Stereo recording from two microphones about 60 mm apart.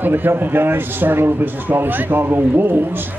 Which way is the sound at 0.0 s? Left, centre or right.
Right.